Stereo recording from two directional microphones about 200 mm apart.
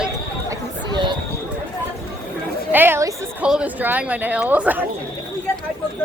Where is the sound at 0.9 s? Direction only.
25° right (ahead or behind).